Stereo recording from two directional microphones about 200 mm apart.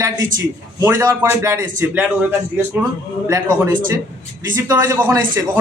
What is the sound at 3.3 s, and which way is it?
A man's voice, 15° right (ahead or behind).